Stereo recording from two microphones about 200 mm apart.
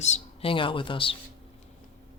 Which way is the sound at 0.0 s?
30° left (ahead or behind).